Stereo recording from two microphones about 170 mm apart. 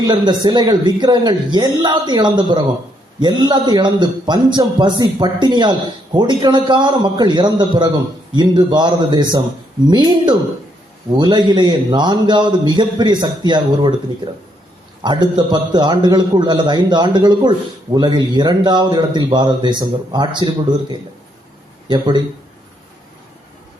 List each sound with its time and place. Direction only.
0.0 s a man's voice: 25° right (ahead or behind)
15.0 s a man's voice: 25° right (ahead or behind)
21.8 s a man's voice: 25° right (ahead or behind)